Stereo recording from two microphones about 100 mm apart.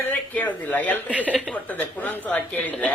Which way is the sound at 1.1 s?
10° right (ahead or behind).